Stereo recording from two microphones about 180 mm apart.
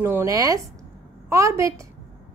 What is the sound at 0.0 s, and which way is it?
A woman's voice, 15° right (ahead or behind).